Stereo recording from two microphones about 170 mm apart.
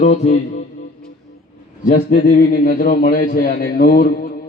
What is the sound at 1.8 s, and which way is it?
A man's voice, 55° left (ahead or behind).